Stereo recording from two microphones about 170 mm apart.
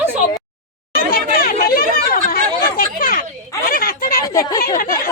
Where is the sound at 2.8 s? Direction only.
55° left (ahead or behind).